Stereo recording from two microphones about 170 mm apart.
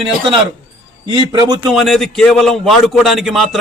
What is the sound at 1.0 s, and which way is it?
Speech, 25° right (ahead or behind).